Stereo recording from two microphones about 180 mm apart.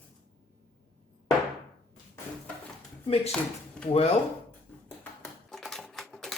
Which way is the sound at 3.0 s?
35° left (ahead or behind).